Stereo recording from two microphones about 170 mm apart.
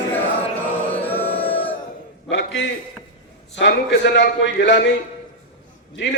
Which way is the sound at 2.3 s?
90° left.